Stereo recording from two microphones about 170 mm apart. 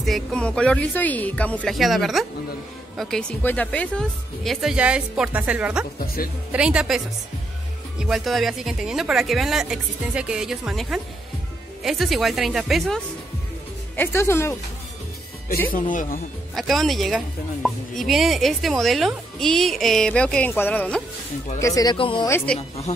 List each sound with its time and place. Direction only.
0.0 s a woman's voice: 5° left (ahead or behind)
5.9 s speech: 60° left (ahead or behind)
6.5 s a woman's voice: 5° right (ahead or behind)
8.0 s a woman's voice: centre (ahead or behind)
13.9 s speech: 15° left (ahead or behind)
15.7 s speech: 50° left (ahead or behind)
16.5 s a woman's voice: centre (ahead or behind)
21.5 s speech: 20° left (ahead or behind)
21.9 s speech: 30° left (ahead or behind)